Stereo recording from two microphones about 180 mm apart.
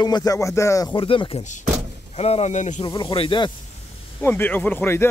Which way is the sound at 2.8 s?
25° left (ahead or behind).